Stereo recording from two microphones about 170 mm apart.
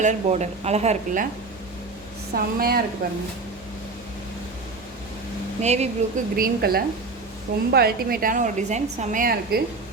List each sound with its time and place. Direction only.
0.0 s speech: 45° right (ahead or behind)
2.3 s a woman's voice: 60° right (ahead or behind)
5.6 s speech: 40° right (ahead or behind)
6.3 s a woman's voice: 60° right (ahead or behind)